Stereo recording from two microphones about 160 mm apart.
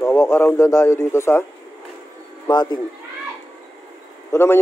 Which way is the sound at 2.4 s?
25° left (ahead or behind).